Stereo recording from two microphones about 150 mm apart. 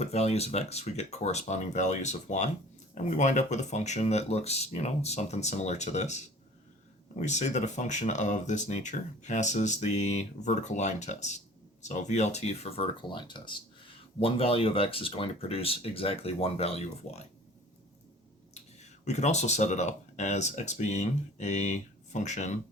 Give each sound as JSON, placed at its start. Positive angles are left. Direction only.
{"t": 0.0, "sound": "speech", "side_deg": 45}
{"t": 18.5, "sound": "speech", "side_deg": 50}